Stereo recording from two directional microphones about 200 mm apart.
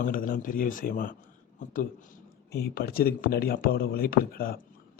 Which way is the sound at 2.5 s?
50° left (ahead or behind).